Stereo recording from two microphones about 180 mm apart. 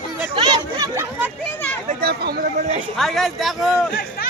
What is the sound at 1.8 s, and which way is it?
Speech, 60° right (ahead or behind).